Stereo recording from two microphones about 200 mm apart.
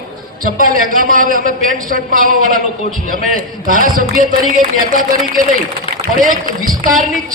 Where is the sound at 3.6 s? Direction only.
45° right (ahead or behind).